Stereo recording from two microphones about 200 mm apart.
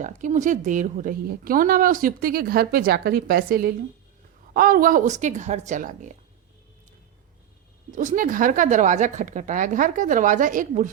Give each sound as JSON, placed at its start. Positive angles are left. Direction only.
{"t": 0.0, "sound": "a woman's voice", "side_deg": -40}
{"t": 7.9, "sound": "a woman's voice", "side_deg": -40}